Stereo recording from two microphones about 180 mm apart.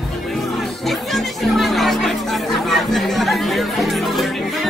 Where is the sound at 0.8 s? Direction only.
Centre (ahead or behind).